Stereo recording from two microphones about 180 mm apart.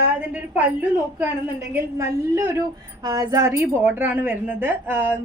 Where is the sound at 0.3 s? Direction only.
10° right (ahead or behind).